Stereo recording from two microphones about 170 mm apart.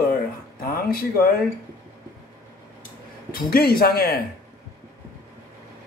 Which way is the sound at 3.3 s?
60° left (ahead or behind).